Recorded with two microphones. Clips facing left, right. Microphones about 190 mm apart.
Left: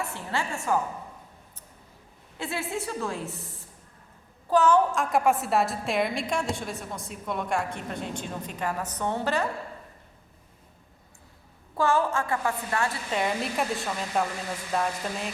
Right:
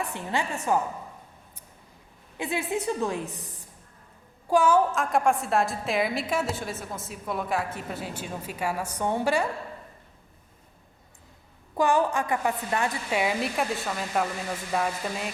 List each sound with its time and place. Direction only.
0.0 s a woman's voice: 15° right (ahead or behind)
2.4 s a woman's voice: 15° right (ahead or behind)
11.8 s a woman's voice: 15° right (ahead or behind)